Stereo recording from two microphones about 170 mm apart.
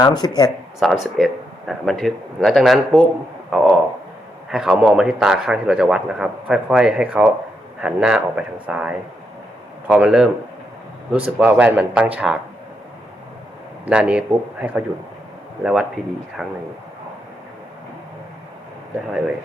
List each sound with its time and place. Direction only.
0.0 s speech: 25° left (ahead or behind)
0.8 s a man's voice: centre (ahead or behind)
11.3 s speech: 10° right (ahead or behind)
13.8 s speech: 5° right (ahead or behind)